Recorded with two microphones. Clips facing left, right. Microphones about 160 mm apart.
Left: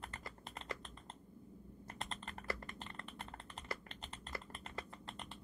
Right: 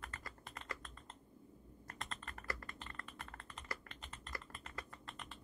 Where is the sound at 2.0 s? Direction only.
25° left (ahead or behind).